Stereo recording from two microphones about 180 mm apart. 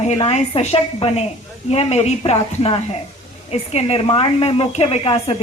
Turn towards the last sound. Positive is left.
turn(degrees=35)  # may be behind; listen again after turning